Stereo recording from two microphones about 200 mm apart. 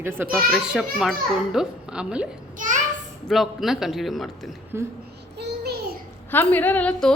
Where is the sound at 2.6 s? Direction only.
40° right (ahead or behind).